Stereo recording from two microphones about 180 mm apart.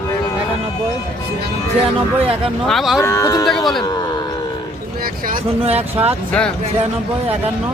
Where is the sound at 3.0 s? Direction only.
15° left (ahead or behind).